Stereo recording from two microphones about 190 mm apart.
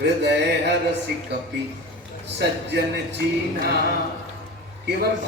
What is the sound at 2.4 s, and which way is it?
Speech, 65° right (ahead or behind).